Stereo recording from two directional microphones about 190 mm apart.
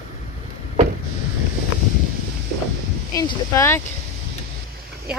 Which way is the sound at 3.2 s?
15° left (ahead or behind).